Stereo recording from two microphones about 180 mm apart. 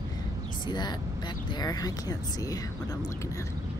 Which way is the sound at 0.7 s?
25° left (ahead or behind).